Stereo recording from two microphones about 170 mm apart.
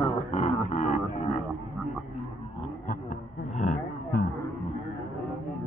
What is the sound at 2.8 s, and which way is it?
Roaring cats, 55° left (ahead or behind).